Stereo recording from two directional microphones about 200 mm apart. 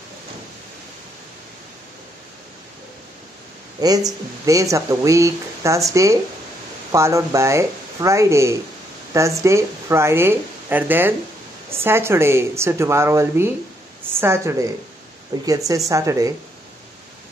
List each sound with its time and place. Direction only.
3.8 s speech: 20° right (ahead or behind)